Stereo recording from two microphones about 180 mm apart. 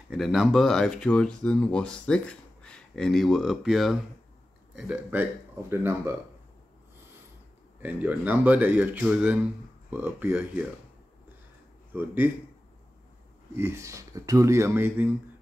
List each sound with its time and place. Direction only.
0.1 s speech: centre (ahead or behind)
7.8 s speech: 10° right (ahead or behind)
11.9 s speech: 10° right (ahead or behind)
13.6 s speech: 15° right (ahead or behind)